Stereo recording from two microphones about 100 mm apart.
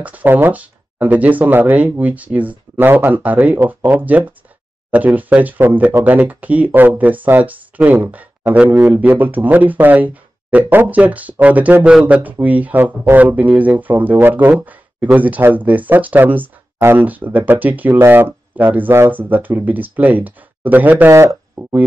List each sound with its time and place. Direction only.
0.0 s speech: 15° right (ahead or behind)
21.1 s speech: 30° right (ahead or behind)